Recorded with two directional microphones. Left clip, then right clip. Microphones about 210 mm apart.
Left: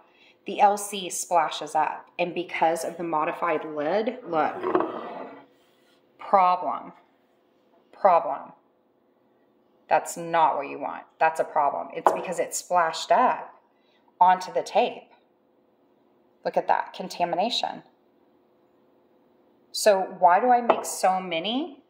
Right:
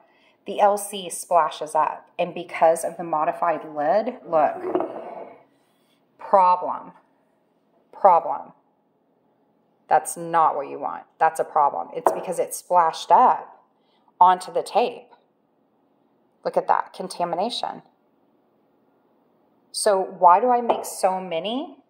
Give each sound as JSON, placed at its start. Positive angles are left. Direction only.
{"t": 0.2, "sound": "a woman's voice", "side_deg": -20}
{"t": 6.1, "sound": "a woman's voice", "side_deg": -20}
{"t": 7.9, "sound": "a woman's voice", "side_deg": -20}
{"t": 9.8, "sound": "a woman's voice", "side_deg": -20}
{"t": 16.4, "sound": "speech", "side_deg": -15}
{"t": 19.7, "sound": "speech", "side_deg": -15}